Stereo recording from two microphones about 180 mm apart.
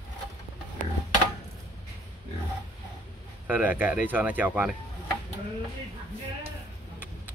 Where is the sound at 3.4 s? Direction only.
10° right (ahead or behind).